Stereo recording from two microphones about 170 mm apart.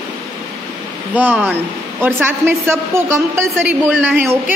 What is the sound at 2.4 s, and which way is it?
A woman's voice, 15° right (ahead or behind).